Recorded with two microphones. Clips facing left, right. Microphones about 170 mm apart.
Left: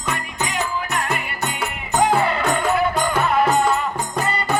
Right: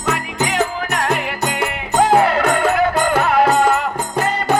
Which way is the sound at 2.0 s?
70° right (ahead or behind).